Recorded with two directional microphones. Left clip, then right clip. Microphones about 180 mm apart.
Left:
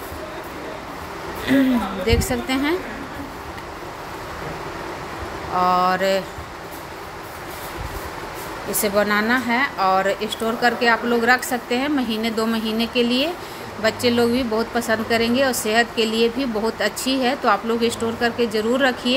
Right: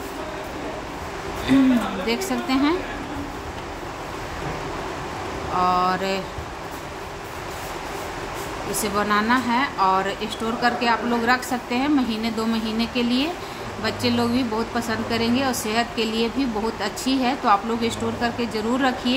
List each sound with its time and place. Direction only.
2.0 s speech: 20° left (ahead or behind)
5.6 s speech: 20° left (ahead or behind)
8.9 s speech: 20° left (ahead or behind)